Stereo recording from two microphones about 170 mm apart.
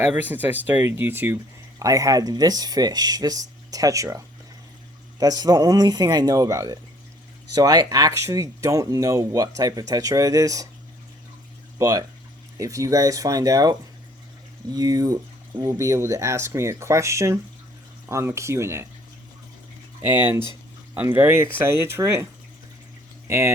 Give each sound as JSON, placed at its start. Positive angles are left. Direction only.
{"t": 0.1, "sound": "speech", "side_deg": -10}
{"t": 5.2, "sound": "speech", "side_deg": -20}
{"t": 11.8, "sound": "speech", "side_deg": -20}
{"t": 20.0, "sound": "speech", "side_deg": -10}
{"t": 23.3, "sound": "speech", "side_deg": -15}